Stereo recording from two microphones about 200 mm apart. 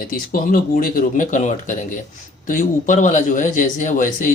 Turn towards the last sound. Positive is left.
turn(degrees=40)  # may be behind; listen again after turning